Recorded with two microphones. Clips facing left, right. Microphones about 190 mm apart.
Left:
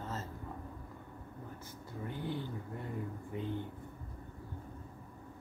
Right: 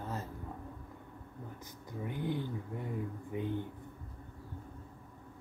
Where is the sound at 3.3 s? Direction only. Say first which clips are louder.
Right 3 dB; 15° right (ahead or behind).